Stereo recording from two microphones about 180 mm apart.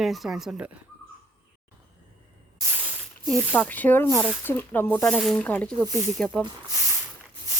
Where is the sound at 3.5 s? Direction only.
10° left (ahead or behind).